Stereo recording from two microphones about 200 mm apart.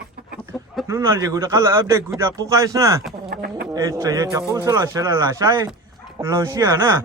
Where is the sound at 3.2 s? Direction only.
50° right (ahead or behind).